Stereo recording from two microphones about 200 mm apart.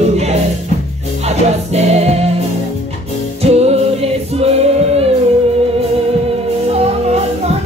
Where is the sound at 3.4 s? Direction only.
30° right (ahead or behind).